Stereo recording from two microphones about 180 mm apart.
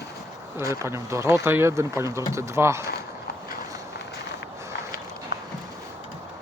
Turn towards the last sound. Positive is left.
turn(degrees=60)  # may be behind; listen again after turning